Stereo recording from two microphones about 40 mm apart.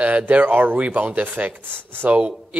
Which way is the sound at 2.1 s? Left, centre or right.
Right.